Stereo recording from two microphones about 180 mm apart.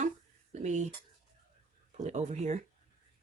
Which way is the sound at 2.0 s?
40° right (ahead or behind).